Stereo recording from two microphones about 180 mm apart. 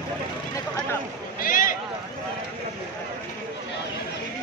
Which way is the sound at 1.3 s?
50° left (ahead or behind).